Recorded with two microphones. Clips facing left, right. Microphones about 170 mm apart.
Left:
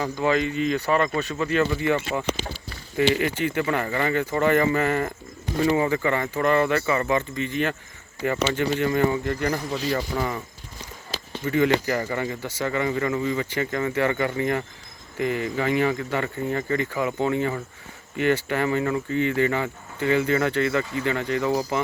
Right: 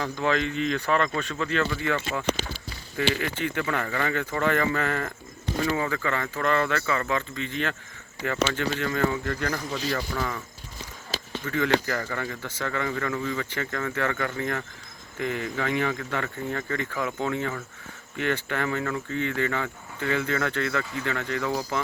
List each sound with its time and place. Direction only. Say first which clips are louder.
0.0 s speech: left 3 dB; 5° left (ahead or behind)
11.4 s speech: left 4 dB; 15° left (ahead or behind)